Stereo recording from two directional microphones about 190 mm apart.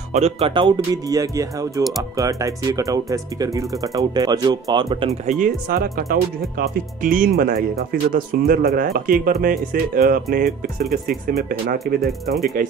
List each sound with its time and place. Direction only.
0.1 s speech: 35° right (ahead or behind)
5.2 s speech: 40° right (ahead or behind)
12.3 s speech: centre (ahead or behind)